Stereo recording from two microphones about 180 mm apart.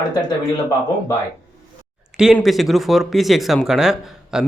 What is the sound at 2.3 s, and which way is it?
Speech, centre (ahead or behind).